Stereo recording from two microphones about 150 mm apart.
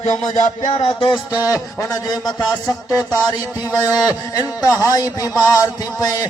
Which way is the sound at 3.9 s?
25° left (ahead or behind).